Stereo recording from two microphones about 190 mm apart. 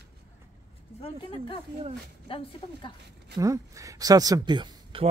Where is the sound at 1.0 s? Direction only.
25° left (ahead or behind).